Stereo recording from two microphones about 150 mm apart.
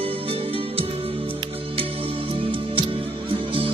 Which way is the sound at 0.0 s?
40° right (ahead or behind).